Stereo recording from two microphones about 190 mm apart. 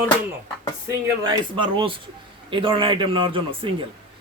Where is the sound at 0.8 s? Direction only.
20° right (ahead or behind).